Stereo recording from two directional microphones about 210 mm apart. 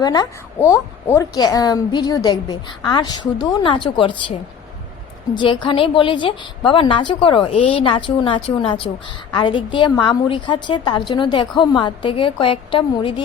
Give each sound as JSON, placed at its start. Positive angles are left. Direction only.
{"t": 0.0, "sound": "a woman's voice", "side_deg": 20}